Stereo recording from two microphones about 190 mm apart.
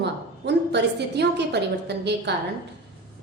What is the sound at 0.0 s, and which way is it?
A woman's voice, 65° right (ahead or behind).